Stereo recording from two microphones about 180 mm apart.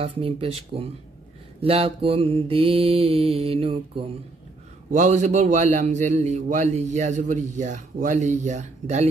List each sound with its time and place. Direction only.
0.0 s mantra: 30° right (ahead or behind)
4.9 s a man's voice: 40° right (ahead or behind)